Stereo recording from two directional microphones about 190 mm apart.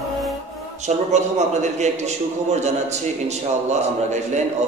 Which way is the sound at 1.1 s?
35° right (ahead or behind).